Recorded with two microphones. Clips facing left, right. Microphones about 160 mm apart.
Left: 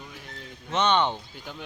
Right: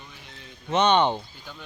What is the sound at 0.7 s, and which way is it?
Speech, 15° right (ahead or behind).